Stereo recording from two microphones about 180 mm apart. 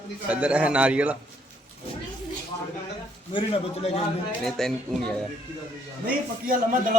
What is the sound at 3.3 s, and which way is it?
Speech, 35° left (ahead or behind).